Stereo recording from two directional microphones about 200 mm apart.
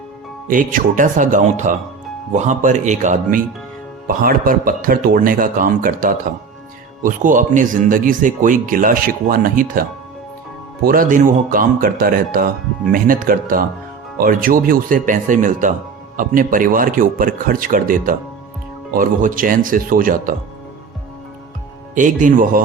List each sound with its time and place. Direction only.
0.4 s speech: 40° right (ahead or behind)
10.8 s speech: 45° right (ahead or behind)
21.9 s speech: 40° right (ahead or behind)